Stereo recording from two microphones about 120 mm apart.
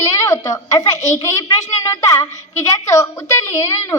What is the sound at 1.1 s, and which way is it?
A woman's voice, 25° left (ahead or behind).